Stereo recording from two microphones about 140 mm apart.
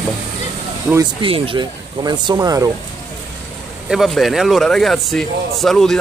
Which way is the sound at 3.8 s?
Centre (ahead or behind).